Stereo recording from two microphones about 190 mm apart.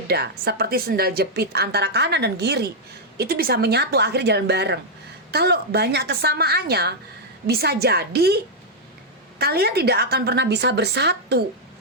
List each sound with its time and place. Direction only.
0.1 s a woman's voice: 60° right (ahead or behind)
9.4 s a woman's voice: 55° right (ahead or behind)